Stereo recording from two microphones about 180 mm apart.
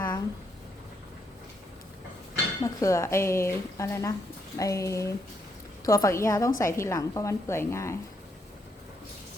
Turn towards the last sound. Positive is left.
turn(degrees=15)  # may be behind; listen again after turning